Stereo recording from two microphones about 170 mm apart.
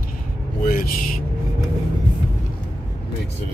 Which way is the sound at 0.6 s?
55° left (ahead or behind).